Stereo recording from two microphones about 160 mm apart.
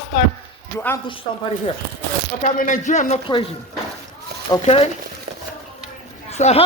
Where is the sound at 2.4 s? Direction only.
50° left (ahead or behind).